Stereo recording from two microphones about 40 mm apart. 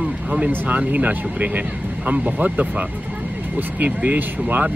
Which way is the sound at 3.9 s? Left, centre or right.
Right.